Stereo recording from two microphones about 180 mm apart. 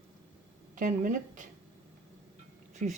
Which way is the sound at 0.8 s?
45° right (ahead or behind).